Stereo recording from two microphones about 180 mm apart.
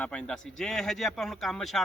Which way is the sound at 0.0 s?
5° left (ahead or behind).